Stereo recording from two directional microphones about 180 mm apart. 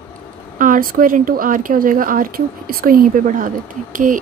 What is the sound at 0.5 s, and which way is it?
Speech, 45° right (ahead or behind).